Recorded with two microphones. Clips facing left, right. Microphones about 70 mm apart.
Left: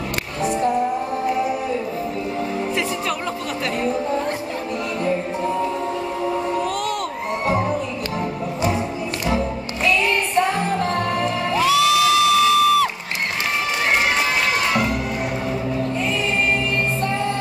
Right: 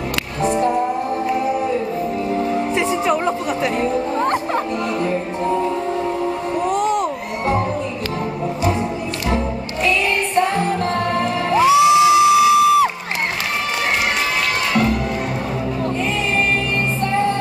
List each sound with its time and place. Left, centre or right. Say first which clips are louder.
2.7 s music: right 5 dB; right
6.7 s a sound: right 6 dB; right
11.5 s music: right 6 dB; centre